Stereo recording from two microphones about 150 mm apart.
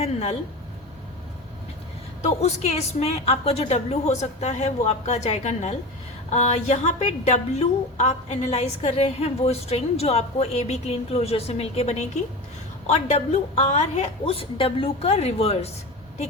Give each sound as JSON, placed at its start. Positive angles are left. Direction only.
{"t": 0.0, "sound": "speech", "side_deg": 45}
{"t": 2.4, "sound": "a woman's voice", "side_deg": 45}